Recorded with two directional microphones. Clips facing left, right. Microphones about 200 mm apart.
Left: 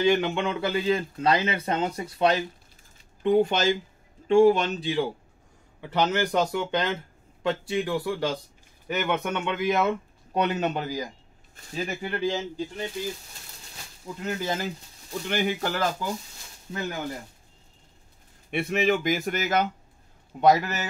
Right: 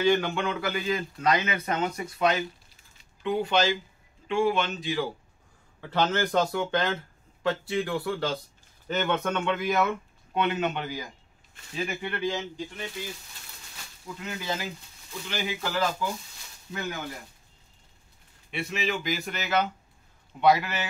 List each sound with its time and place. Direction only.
0.0 s speech: 20° left (ahead or behind)
3.2 s speech: 45° left (ahead or behind); by 5.0 s 30° left (ahead or behind)
5.8 s speech: 15° left (ahead or behind)
10.3 s speech: 40° left (ahead or behind)
14.0 s speech: 45° left (ahead or behind)
18.5 s speech: 55° left (ahead or behind)